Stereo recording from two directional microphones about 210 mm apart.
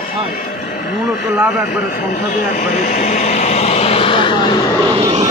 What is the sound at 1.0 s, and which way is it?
Speech, 5° right (ahead or behind).